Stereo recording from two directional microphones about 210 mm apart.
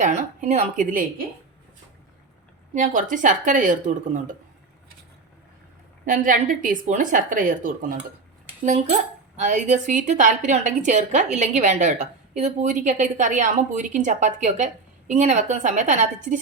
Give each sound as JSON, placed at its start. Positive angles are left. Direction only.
{"t": 0.0, "sound": "speech", "side_deg": -35}
{"t": 2.7, "sound": "speech", "side_deg": -35}
{"t": 6.1, "sound": "speech", "side_deg": -40}